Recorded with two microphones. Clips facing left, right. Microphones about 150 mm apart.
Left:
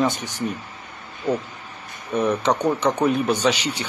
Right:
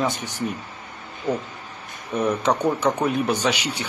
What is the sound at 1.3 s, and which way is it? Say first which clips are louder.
Speech: left 2 dB; 10° right (ahead or behind).